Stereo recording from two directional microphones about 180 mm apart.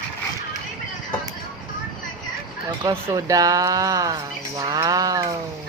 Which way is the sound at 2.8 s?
20° right (ahead or behind).